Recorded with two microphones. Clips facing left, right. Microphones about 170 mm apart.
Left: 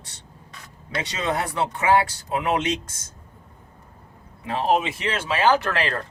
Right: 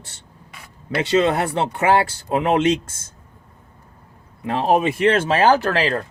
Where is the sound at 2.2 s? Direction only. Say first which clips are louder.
Right 5 dB; 35° right (ahead or behind).